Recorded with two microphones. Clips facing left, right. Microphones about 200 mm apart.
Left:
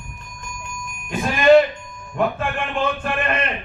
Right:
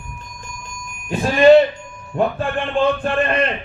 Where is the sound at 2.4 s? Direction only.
30° right (ahead or behind).